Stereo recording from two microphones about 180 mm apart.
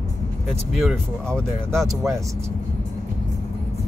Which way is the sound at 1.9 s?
15° right (ahead or behind).